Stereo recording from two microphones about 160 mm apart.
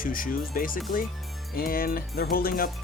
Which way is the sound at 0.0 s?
60° left (ahead or behind).